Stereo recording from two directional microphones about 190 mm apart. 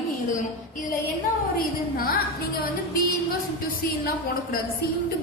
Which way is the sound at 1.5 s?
50° left (ahead or behind).